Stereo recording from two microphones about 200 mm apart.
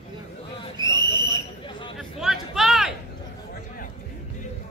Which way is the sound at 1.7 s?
25° left (ahead or behind).